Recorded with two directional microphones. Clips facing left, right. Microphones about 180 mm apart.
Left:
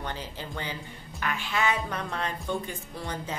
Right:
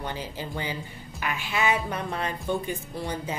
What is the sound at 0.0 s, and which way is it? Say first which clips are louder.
Speech: right 3 dB; 10° right (ahead or behind).